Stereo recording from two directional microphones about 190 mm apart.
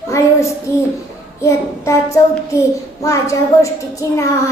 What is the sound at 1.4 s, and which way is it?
A child's voice, 15° left (ahead or behind).